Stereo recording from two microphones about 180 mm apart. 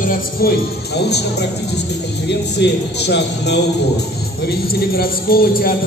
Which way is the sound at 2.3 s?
70° left (ahead or behind).